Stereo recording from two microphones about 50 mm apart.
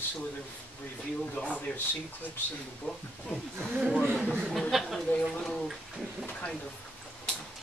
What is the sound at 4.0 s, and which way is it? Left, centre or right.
Speech, centre.